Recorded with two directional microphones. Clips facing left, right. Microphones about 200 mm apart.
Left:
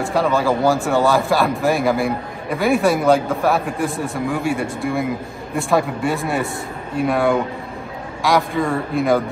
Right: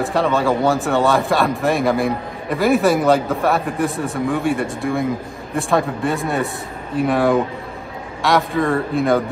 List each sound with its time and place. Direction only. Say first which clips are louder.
0.0 s speech: even; centre (ahead or behind)